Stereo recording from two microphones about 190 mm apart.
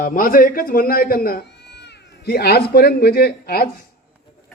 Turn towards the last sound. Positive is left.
turn(degrees=55)  # may be behind; listen again after turning